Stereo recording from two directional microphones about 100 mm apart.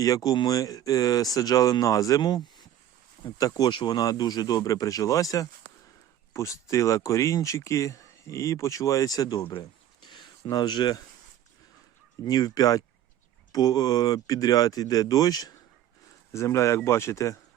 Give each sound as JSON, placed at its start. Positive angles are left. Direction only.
{"t": 0.0, "sound": "speech", "side_deg": 35}
{"t": 9.4, "sound": "a sound", "side_deg": 55}
{"t": 12.2, "sound": "speech", "side_deg": 40}
{"t": 16.3, "sound": "speech", "side_deg": 30}